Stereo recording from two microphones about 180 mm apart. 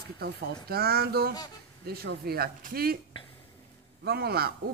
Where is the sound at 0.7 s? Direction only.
60° right (ahead or behind).